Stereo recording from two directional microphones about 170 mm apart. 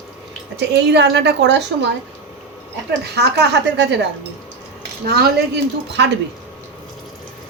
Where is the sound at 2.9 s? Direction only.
80° right.